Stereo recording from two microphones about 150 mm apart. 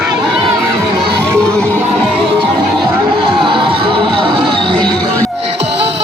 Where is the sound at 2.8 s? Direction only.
35° right (ahead or behind).